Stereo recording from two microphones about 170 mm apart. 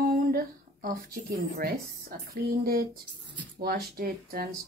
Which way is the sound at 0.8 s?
60° right (ahead or behind).